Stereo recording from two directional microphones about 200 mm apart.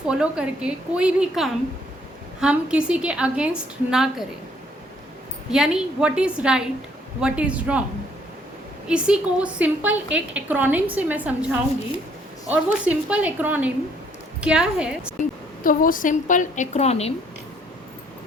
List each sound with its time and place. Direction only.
0.1 s a woman's voice: 5° right (ahead or behind)
5.5 s a woman's voice: 5° right (ahead or behind)
8.9 s a woman's voice: 5° right (ahead or behind)
15.2 s a woman's voice: 45° left (ahead or behind)